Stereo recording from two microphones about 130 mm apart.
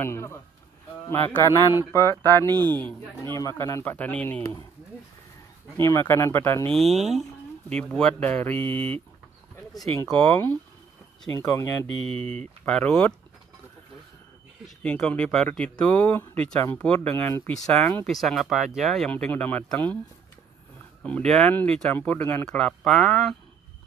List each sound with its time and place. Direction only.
0.0 s speech: 20° left (ahead or behind)
2.4 s speech: 30° right (ahead or behind)
2.8 s speech: 10° left (ahead or behind)
3.3 s speech: 25° left (ahead or behind)
5.8 s speech: 20° left (ahead or behind)
6.7 s speech: centre (ahead or behind)
10.0 s speech: 10° left (ahead or behind)
11.3 s speech: 20° left (ahead or behind)
12.6 s speech: 5° left (ahead or behind)
14.8 s speech: 10° left (ahead or behind)
17.1 s speech: 20° left (ahead or behind)
18.0 s speech: centre (ahead or behind)
21.0 s speech: 5° left (ahead or behind)